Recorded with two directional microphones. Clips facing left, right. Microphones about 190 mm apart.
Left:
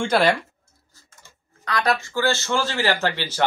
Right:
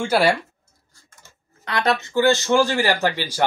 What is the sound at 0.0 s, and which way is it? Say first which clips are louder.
Speech: right 1 dB; 10° right (ahead or behind).